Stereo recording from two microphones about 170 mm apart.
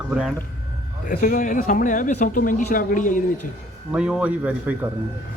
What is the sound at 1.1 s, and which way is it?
Speech, 55° left (ahead or behind).